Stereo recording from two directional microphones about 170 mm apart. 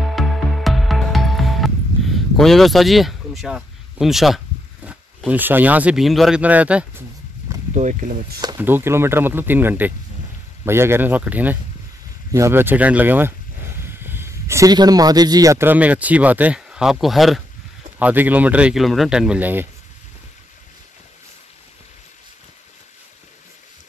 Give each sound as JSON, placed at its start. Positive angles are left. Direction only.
{"t": 0.1, "sound": "music", "side_deg": 0}
{"t": 4.8, "sound": "speech", "side_deg": -10}
{"t": 7.7, "sound": "speech", "side_deg": -45}
{"t": 8.4, "sound": "speech", "side_deg": -20}